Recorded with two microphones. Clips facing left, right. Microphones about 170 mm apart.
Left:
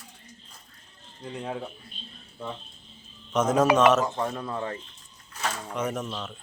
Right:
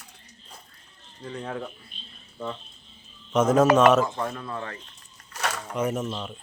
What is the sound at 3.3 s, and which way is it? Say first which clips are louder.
Speech: right 3 dB; 10° right (ahead or behind).